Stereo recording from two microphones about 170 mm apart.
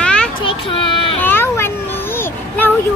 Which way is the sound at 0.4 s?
30° left (ahead or behind).